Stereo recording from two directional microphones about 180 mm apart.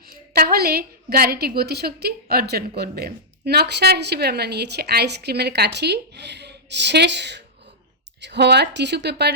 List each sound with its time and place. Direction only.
0.0 s a woman's voice: 55° right (ahead or behind)